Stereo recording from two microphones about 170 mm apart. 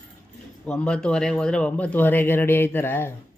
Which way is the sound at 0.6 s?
5° left (ahead or behind).